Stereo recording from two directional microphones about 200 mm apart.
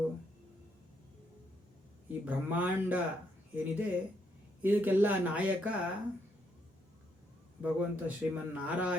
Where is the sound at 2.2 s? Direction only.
10° right (ahead or behind).